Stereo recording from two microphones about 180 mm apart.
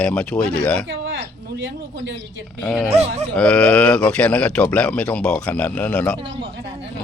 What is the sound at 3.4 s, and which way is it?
A man's voice, 5° left (ahead or behind).